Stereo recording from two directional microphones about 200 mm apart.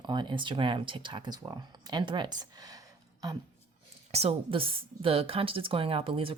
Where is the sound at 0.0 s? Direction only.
20° right (ahead or behind).